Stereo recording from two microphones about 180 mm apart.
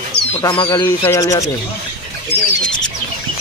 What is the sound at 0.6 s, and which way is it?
Speech, 15° left (ahead or behind).